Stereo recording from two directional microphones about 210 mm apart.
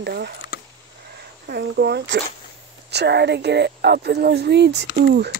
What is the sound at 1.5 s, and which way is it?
A woman's voice, 50° right (ahead or behind).